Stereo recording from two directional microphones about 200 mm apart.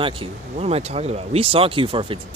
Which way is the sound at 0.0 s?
30° right (ahead or behind).